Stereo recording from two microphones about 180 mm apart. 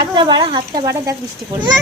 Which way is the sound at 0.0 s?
25° right (ahead or behind).